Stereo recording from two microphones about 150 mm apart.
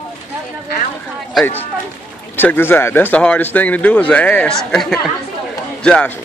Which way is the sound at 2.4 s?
15° left (ahead or behind).